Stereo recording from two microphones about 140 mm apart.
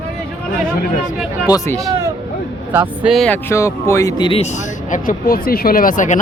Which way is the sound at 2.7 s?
10° right (ahead or behind).